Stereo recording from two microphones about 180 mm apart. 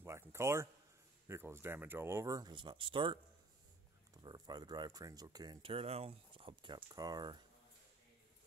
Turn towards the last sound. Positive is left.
turn(degrees=-25)  # may be behind; listen again after turning